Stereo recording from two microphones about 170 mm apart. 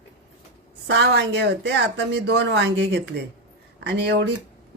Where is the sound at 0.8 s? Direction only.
90° right.